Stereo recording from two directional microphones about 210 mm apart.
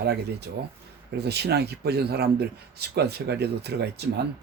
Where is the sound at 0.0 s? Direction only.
50° right (ahead or behind).